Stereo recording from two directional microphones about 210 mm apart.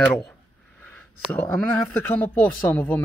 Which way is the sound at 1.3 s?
10° left (ahead or behind).